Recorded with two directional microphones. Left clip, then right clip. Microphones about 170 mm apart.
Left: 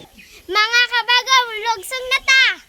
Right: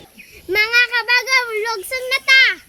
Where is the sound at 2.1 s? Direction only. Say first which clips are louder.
Right 1 dB; 10° left (ahead or behind).